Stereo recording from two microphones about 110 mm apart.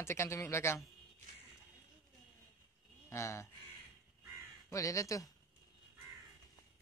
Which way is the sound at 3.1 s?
25° left (ahead or behind).